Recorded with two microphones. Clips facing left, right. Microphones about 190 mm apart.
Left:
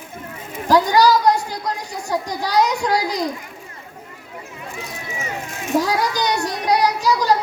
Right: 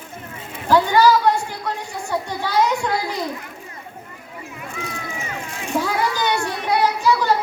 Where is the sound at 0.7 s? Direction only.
40° left (ahead or behind).